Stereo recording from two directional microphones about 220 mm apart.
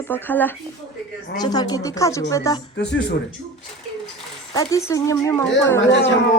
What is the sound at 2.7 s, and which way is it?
Speech, 50° left (ahead or behind).